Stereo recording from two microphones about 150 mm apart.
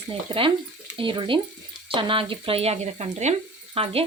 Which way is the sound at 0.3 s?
40° right (ahead or behind).